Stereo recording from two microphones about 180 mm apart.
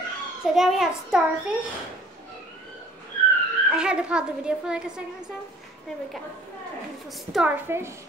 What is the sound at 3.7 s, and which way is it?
Speech, 5° right (ahead or behind).